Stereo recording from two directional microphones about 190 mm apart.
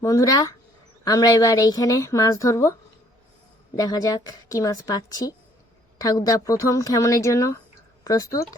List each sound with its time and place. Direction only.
0.0 s speech: 15° left (ahead or behind)
3.8 s speech: 20° left (ahead or behind)